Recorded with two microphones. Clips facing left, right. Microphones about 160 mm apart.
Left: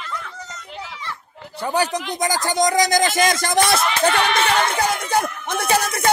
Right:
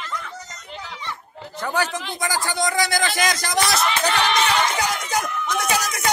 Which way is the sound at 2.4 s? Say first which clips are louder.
Left 6 dB; 40° left (ahead or behind).